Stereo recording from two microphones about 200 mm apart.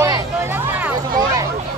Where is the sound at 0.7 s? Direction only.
15° right (ahead or behind).